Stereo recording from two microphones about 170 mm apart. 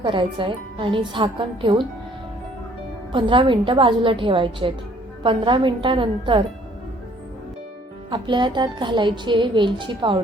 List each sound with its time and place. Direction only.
0.0 s a woman's voice: 30° right (ahead or behind)
3.1 s a woman's voice: 30° right (ahead or behind)
8.1 s a woman's voice: 25° right (ahead or behind)